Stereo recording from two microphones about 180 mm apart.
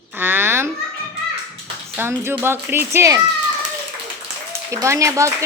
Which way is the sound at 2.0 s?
10° right (ahead or behind).